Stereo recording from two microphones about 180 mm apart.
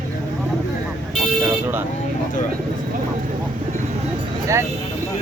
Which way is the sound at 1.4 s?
10° right (ahead or behind).